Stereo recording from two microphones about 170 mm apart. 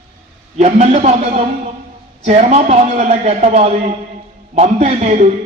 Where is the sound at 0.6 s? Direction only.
40° right (ahead or behind).